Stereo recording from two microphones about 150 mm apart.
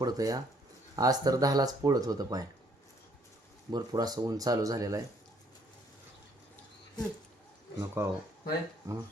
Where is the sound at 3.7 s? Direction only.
25° right (ahead or behind).